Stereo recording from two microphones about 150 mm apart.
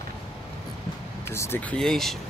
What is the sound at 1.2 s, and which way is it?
Speech, 15° left (ahead or behind).